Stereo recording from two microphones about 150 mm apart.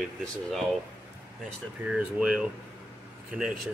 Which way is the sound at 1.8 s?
5° right (ahead or behind).